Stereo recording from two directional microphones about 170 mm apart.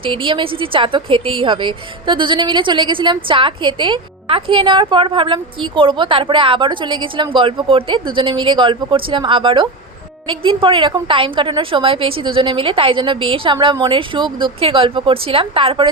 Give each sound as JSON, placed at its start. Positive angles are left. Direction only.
{"t": 0.0, "sound": "a woman's voice", "side_deg": -30}